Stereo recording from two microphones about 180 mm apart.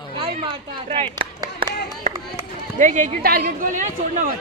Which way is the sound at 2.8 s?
45° right (ahead or behind).